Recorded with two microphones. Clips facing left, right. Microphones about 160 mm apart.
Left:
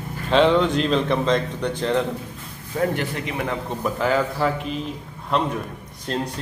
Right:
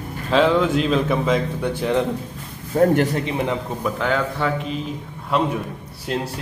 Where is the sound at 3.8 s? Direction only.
5° left (ahead or behind).